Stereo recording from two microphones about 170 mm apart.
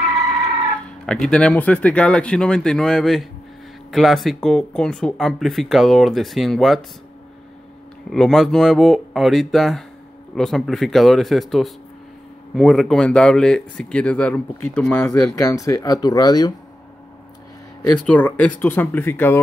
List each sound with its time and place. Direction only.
1.0 s speech: 5° left (ahead or behind)
8.1 s speech: centre (ahead or behind)
15.3 s speech: 20° left (ahead or behind)
17.9 s speech: 10° left (ahead or behind)